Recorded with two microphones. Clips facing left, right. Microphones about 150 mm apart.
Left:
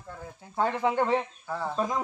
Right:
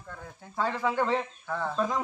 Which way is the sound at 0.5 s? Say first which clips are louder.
Left 2 dB; 20° left (ahead or behind).